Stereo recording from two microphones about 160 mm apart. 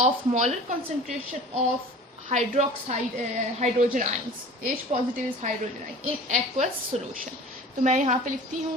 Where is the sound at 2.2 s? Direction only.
45° right (ahead or behind).